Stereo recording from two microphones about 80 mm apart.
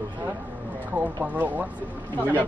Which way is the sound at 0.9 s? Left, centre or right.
Centre.